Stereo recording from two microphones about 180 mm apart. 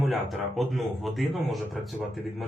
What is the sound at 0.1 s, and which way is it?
Speech, centre (ahead or behind).